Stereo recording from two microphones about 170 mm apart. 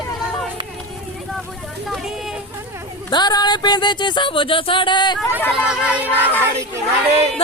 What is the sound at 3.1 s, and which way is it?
Speech, 25° left (ahead or behind).